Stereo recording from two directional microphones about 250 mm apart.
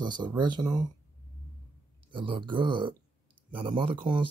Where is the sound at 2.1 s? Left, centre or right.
Centre.